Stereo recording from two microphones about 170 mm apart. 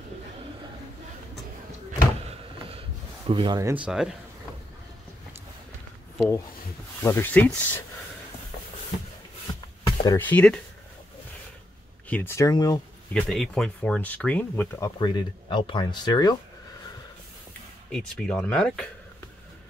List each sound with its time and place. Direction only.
3.3 s speech: 30° right (ahead or behind)
3.7 s speech: 5° right (ahead or behind)
6.1 s speech: 10° left (ahead or behind)
9.5 s a sound: 20° left (ahead or behind)
10.2 s speech: 5° left (ahead or behind)
12.1 s speech: 10° left (ahead or behind)
13.1 s speech: centre (ahead or behind); by 16.3 s 25° left (ahead or behind)
17.9 s speech: 5° left (ahead or behind)